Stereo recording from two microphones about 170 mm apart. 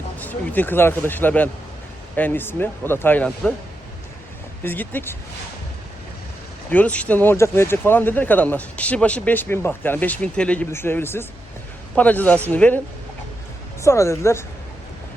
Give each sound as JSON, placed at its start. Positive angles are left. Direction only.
{"t": 0.2, "sound": "speech", "side_deg": 10}
{"t": 4.6, "sound": "speech", "side_deg": 10}
{"t": 6.7, "sound": "speech", "side_deg": 10}
{"t": 13.8, "sound": "speech", "side_deg": 15}